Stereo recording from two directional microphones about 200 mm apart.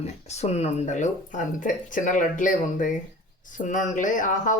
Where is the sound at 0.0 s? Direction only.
35° left (ahead or behind).